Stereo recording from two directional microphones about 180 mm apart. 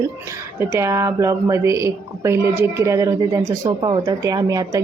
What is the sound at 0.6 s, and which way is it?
Speech, 15° right (ahead or behind).